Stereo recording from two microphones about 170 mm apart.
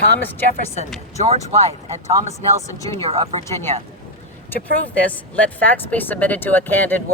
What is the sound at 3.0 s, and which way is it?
Speech, 35° right (ahead or behind).